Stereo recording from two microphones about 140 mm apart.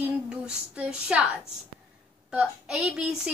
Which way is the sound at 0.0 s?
10° right (ahead or behind).